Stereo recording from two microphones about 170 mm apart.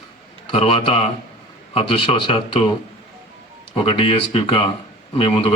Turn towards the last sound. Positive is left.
turn(degrees=30)  # may be behind; listen again after turning